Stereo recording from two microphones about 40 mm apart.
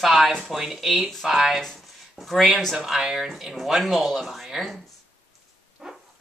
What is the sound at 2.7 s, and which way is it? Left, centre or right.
Speech, centre.